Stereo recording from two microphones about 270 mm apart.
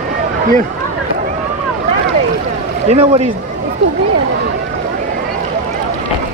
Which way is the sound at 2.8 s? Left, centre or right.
Right.